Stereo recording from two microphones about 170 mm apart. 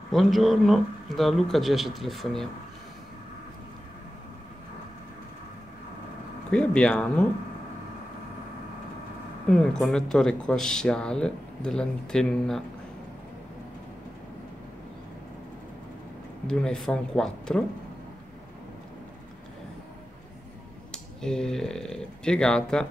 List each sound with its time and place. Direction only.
0.1 s speech: centre (ahead or behind)
6.5 s speech: 5° left (ahead or behind)
9.5 s speech: 5° left (ahead or behind)
16.4 s speech: 5° left (ahead or behind)
20.9 s speech: 5° left (ahead or behind)